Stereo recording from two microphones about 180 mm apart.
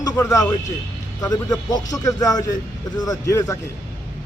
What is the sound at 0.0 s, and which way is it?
Speech, 20° left (ahead or behind).